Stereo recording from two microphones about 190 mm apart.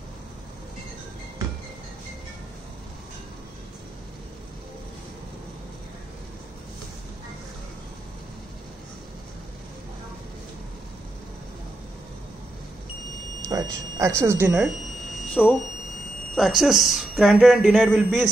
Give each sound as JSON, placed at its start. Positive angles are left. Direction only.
{"t": 13.5, "sound": "speech", "side_deg": -20}
{"t": 15.4, "sound": "speech", "side_deg": 5}